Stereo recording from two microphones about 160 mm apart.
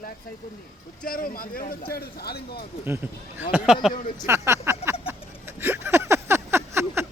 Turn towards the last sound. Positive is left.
turn(degrees=-15)  # may be behind; listen again after turning